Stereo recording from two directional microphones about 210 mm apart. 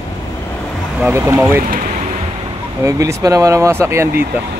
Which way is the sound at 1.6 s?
40° right (ahead or behind).